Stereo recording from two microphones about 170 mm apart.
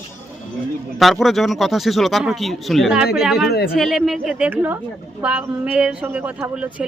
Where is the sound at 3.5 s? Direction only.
70° left (ahead or behind).